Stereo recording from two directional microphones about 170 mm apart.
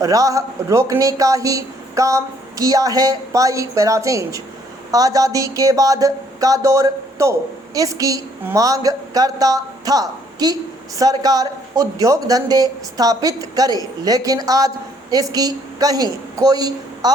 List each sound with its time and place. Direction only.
0.0 s speech: 20° right (ahead or behind)